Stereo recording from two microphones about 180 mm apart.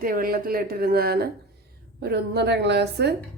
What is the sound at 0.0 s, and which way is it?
A woman's voice, 55° right (ahead or behind).